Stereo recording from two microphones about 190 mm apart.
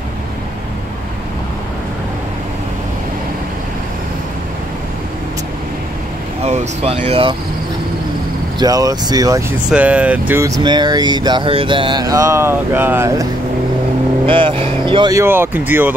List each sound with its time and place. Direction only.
6.4 s speech: 35° right (ahead or behind)
8.5 s speech: 20° right (ahead or behind)
9.7 s speech: 5° right (ahead or behind)
14.2 s speech: 25° right (ahead or behind); by 15.9 s 10° right (ahead or behind)